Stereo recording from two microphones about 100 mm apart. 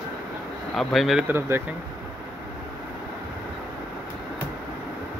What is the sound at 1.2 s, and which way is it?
Speech, 25° right (ahead or behind).